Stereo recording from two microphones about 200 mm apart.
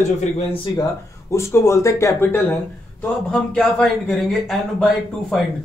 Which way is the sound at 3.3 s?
Centre (ahead or behind).